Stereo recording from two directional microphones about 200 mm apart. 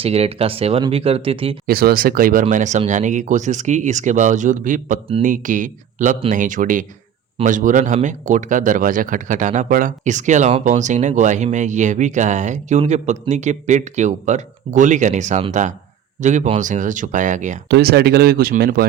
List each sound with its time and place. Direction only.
0.0 s speech: 30° right (ahead or behind)
1.6 s speech: 50° right (ahead or behind)
17.7 s speech: 55° right (ahead or behind)